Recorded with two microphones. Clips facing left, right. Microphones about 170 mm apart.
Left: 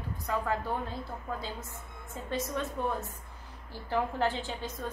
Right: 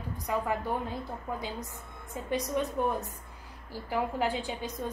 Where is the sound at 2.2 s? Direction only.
15° right (ahead or behind).